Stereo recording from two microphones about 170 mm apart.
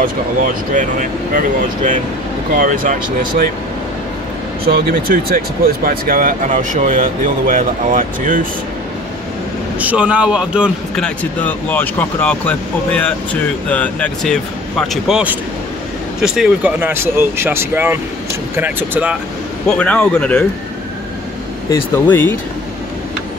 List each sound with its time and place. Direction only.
0.0 s speech: 50° right (ahead or behind)
2.5 s speech: 55° right (ahead or behind)
4.6 s speech: 55° right (ahead or behind)
9.8 s speech: 10° right (ahead or behind)
11.0 s speech: 10° left (ahead or behind); by 19.1 s 10° right (ahead or behind)
19.8 s speech: 5° left (ahead or behind)
21.6 s speech: 15° left (ahead or behind)